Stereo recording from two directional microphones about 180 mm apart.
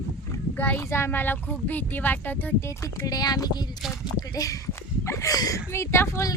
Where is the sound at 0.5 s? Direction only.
10° left (ahead or behind).